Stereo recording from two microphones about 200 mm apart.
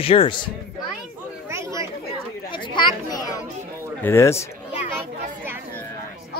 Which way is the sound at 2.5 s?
25° left (ahead or behind).